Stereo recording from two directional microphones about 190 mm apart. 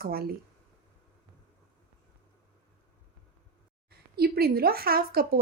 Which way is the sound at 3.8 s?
55° right (ahead or behind).